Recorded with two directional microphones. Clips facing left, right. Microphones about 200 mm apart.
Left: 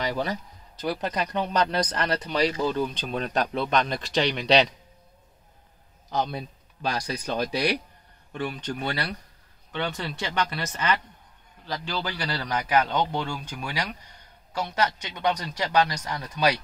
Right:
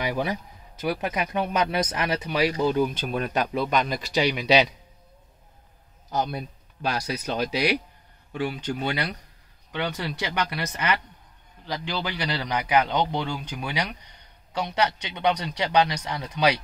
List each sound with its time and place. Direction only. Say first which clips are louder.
0.0 s speech: right 1 dB; 15° right (ahead or behind)
6.1 s a man's voice: right 1 dB; 5° right (ahead or behind)